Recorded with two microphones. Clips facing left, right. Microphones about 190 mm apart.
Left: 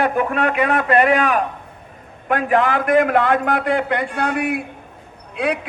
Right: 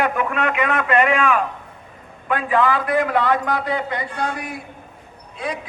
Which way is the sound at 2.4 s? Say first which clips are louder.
Left 2 dB; 60° left (ahead or behind).